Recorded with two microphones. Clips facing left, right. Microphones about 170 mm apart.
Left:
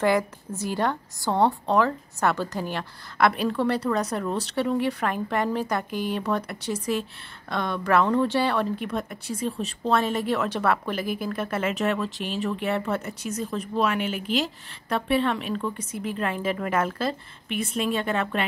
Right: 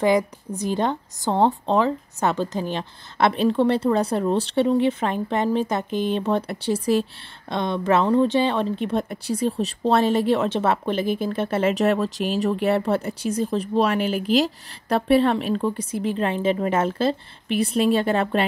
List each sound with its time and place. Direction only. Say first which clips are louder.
0.0 s speech: right 3 dB; 15° right (ahead or behind); by 18.4 s 35° right (ahead or behind)